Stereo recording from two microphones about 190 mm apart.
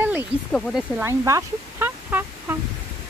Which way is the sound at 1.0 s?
15° right (ahead or behind).